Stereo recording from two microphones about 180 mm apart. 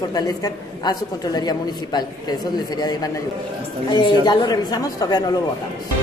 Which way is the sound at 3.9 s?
25° left (ahead or behind).